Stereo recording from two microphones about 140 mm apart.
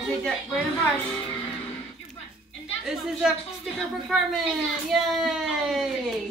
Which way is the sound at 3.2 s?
5° right (ahead or behind).